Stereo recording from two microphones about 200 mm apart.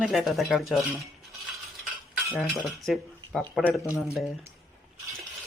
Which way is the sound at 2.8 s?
Centre (ahead or behind).